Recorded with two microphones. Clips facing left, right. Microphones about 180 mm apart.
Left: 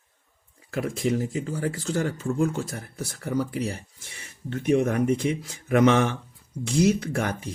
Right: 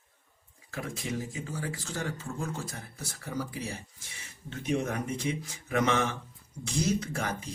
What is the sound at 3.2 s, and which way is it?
Speech, 65° left (ahead or behind).